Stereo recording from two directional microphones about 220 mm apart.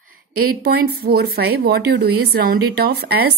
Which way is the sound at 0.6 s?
45° right (ahead or behind).